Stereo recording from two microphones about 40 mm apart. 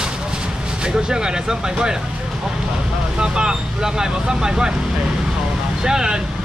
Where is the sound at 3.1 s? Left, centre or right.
Right.